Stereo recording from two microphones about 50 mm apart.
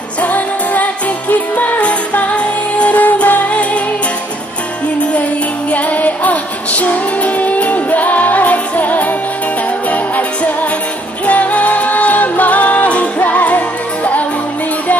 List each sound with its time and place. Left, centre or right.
0.2 s music: left
5.7 s music: left